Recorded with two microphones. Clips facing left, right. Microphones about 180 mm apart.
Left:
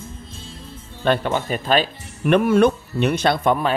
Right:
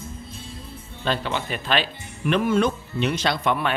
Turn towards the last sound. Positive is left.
turn(degrees=40)  # may be behind; listen again after turning